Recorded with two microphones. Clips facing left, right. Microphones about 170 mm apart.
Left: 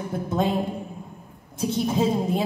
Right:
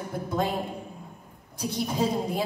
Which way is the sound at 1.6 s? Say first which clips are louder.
Left 4 dB; 25° left (ahead or behind).